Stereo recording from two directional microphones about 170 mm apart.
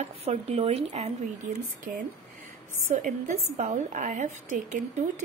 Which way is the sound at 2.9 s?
50° right (ahead or behind).